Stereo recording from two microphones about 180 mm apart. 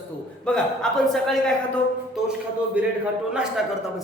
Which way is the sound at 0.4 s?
5° left (ahead or behind).